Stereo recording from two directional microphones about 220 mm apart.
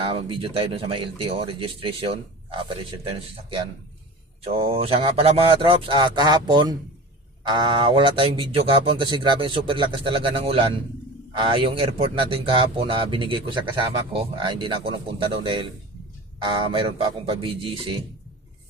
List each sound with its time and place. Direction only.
0.0 s speech: 25° right (ahead or behind)